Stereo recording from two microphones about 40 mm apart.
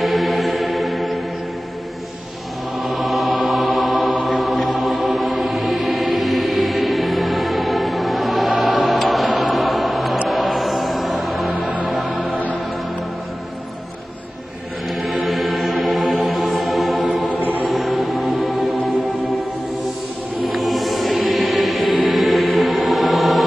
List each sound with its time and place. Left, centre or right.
0.0 s music: centre
2.8 s music: centre
12.3 s music: right
14.9 s music: centre
17.4 s music: right
17.6 s music: centre
20.4 s music: centre